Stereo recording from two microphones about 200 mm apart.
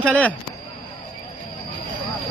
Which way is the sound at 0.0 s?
5° left (ahead or behind).